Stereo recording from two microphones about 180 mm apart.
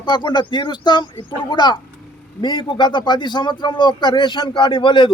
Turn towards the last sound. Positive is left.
turn(degrees=25)  # may be behind; listen again after turning